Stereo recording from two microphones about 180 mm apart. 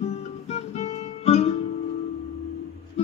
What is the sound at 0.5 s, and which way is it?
Guitar, 35° left (ahead or behind).